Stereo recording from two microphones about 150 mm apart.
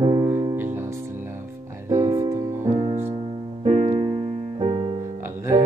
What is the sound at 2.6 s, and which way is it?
Music, 50° right (ahead or behind).